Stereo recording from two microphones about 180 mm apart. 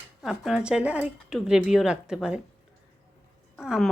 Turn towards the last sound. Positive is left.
turn(degrees=-5)  # may be behind; listen again after turning